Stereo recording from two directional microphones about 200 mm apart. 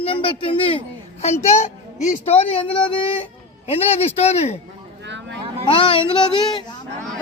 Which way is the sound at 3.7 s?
30° left (ahead or behind).